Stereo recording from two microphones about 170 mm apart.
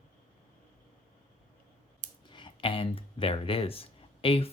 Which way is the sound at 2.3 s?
30° left (ahead or behind).